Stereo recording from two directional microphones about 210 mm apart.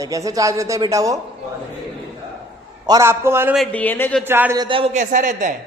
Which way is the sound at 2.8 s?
15° right (ahead or behind).